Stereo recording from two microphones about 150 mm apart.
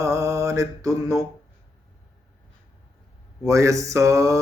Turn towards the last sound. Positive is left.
turn(degrees=-20)  # may be behind; listen again after turning